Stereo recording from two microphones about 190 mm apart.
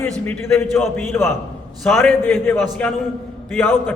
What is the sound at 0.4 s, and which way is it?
A man's voice, 15° left (ahead or behind).